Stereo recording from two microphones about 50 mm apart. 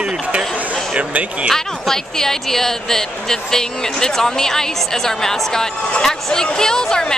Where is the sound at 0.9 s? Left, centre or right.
Right.